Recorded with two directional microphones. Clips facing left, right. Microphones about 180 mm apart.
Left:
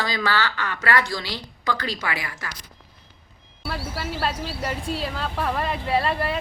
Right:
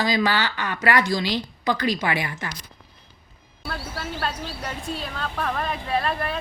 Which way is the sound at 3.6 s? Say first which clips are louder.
Left 2 dB; 5° left (ahead or behind).